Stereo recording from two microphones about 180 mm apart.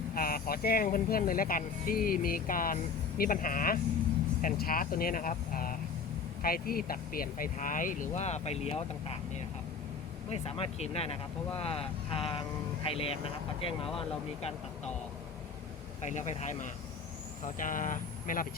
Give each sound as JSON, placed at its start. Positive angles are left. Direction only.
{"t": 0.1, "sound": "speech", "side_deg": 55}
{"t": 16.0, "sound": "speech", "side_deg": 40}